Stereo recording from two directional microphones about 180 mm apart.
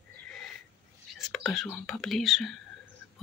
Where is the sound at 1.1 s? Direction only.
Centre (ahead or behind).